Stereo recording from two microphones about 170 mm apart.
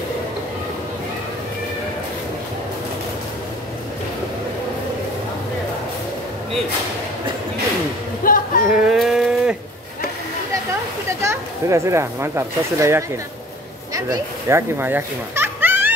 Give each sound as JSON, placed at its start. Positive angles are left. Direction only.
{"t": 8.2, "sound": "a sound", "side_deg": 55}
{"t": 8.6, "sound": "livestock", "side_deg": -5}
{"t": 11.1, "sound": "speech", "side_deg": -15}